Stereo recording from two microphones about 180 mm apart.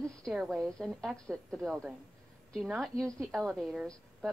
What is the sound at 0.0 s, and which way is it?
A woman's voice, centre (ahead or behind).